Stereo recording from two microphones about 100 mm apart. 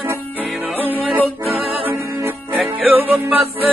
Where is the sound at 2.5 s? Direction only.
15° right (ahead or behind).